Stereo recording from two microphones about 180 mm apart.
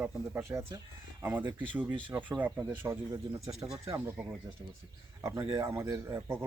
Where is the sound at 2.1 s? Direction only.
10° right (ahead or behind).